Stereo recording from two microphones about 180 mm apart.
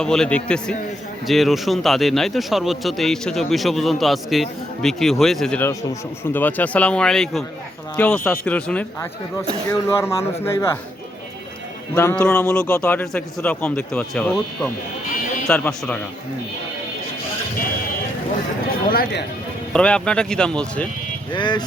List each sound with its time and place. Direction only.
0.0 s a man's voice: 5° left (ahead or behind)
11.9 s a man's voice: 15° left (ahead or behind)
15.4 s speech: 10° left (ahead or behind)
18.9 s speech: 55° left (ahead or behind)
19.7 s a man's voice: 5° left (ahead or behind)
21.3 s speech: 25° left (ahead or behind)